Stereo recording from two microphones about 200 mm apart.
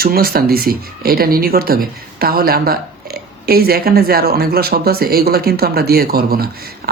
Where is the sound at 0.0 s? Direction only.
50° right (ahead or behind).